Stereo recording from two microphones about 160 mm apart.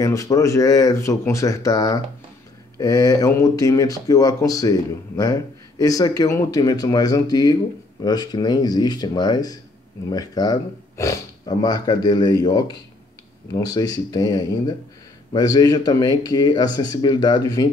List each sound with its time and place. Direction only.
0.0 s speech: 20° left (ahead or behind)